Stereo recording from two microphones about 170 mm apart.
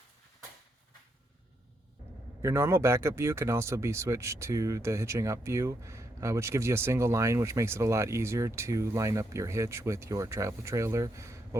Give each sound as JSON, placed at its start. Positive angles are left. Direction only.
{"t": 2.4, "sound": "speech", "side_deg": -15}